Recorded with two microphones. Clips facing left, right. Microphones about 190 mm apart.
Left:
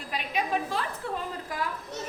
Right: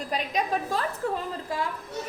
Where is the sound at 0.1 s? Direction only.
40° right (ahead or behind).